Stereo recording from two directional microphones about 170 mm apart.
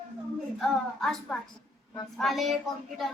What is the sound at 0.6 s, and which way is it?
A woman's voice, centre (ahead or behind).